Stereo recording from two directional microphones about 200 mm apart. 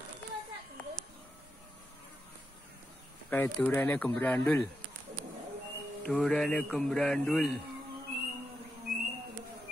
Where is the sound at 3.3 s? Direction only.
10° left (ahead or behind).